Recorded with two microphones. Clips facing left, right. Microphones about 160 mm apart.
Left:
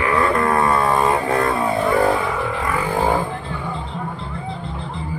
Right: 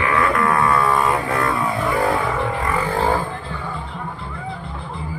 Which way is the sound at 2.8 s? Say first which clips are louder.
Left 2 dB; 15° left (ahead or behind).